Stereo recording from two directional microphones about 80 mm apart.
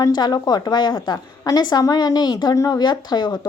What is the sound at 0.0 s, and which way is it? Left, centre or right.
A woman's voice, left.